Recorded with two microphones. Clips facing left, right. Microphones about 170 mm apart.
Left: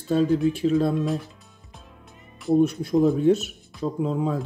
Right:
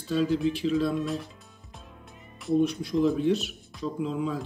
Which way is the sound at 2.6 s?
50° left (ahead or behind).